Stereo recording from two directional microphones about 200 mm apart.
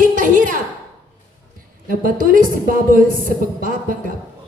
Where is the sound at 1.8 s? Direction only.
45° right (ahead or behind).